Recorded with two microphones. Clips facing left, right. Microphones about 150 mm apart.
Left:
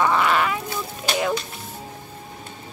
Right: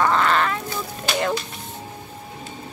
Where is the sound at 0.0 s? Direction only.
10° left (ahead or behind).